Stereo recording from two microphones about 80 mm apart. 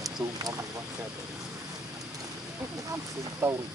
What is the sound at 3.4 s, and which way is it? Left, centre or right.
Speech, right.